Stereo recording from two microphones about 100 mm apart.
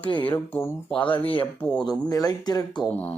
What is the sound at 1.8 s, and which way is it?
Speech, 40° left (ahead or behind).